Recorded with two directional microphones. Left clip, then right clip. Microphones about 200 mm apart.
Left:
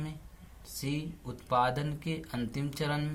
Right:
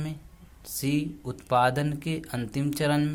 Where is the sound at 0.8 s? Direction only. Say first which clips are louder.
Right 8 dB; 40° right (ahead or behind).